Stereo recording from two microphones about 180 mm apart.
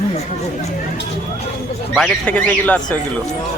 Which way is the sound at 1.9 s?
5° left (ahead or behind).